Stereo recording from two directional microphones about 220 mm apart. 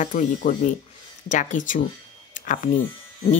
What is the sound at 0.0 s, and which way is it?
Speech, 35° left (ahead or behind).